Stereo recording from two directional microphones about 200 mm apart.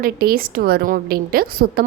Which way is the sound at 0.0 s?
50° right (ahead or behind).